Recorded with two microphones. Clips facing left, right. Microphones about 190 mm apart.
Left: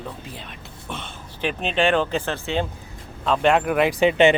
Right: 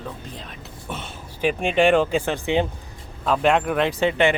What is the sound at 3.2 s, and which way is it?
Speech, 5° right (ahead or behind).